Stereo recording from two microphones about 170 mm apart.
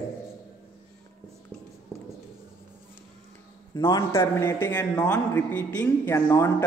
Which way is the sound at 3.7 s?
25° left (ahead or behind).